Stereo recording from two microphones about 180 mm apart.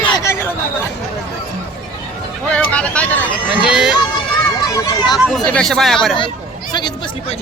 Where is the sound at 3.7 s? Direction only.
5° right (ahead or behind).